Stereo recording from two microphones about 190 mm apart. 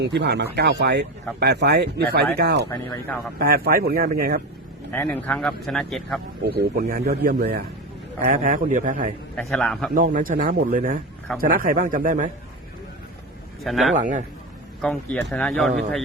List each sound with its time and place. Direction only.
0.0 s speech: 60° right (ahead or behind)
3.3 s a man's voice: 50° right (ahead or behind)
4.9 s speech: 10° left (ahead or behind)
6.4 s a man's voice: 55° right (ahead or behind)
8.3 s a man's voice: 45° right (ahead or behind)
9.3 s speech: 5° left (ahead or behind)
9.9 s a man's voice: 45° right (ahead or behind)
13.7 s speech: centre (ahead or behind)
13.9 s a man's voice: 40° right (ahead or behind)
14.8 s speech: 5° left (ahead or behind)